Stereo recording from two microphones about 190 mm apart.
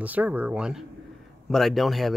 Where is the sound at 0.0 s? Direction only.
10° right (ahead or behind).